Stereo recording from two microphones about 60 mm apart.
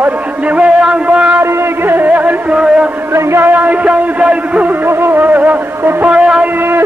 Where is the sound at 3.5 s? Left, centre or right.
Right.